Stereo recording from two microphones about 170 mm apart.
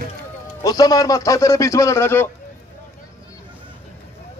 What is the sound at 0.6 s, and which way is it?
A man's voice, 20° left (ahead or behind).